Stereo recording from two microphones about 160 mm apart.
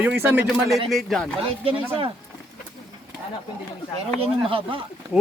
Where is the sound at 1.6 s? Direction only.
35° right (ahead or behind).